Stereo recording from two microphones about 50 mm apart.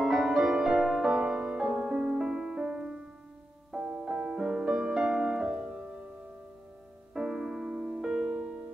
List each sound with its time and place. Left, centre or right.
0.0 s music: centre
7.2 s piano: centre